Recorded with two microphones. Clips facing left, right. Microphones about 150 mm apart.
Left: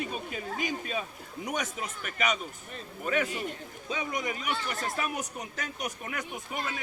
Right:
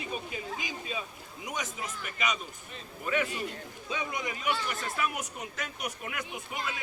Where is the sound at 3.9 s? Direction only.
40° left (ahead or behind).